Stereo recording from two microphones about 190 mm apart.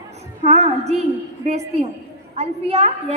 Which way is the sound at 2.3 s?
35° right (ahead or behind).